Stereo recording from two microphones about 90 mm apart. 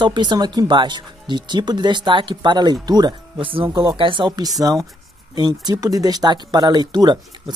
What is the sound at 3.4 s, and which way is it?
Speech, 85° right.